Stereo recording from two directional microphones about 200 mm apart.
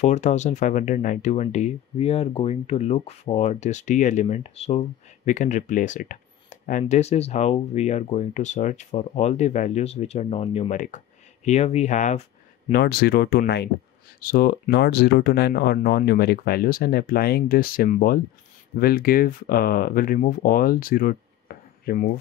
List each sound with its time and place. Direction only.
0.0 s speech: 35° left (ahead or behind)
12.6 s speech: 50° left (ahead or behind)